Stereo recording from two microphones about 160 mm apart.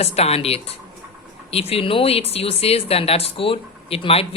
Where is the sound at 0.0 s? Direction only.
40° left (ahead or behind).